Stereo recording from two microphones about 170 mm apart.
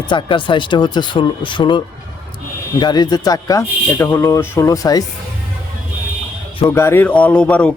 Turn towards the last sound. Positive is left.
turn(degrees=5)  # may be behind; listen again after turning